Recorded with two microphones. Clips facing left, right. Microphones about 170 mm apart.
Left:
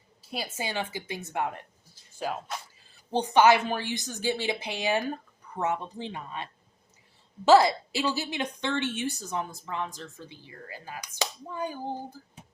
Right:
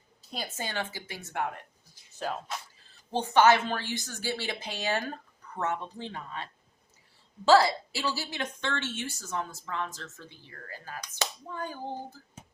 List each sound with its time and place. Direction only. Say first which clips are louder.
0.2 s a woman's voice: left 2 dB; 10° left (ahead or behind)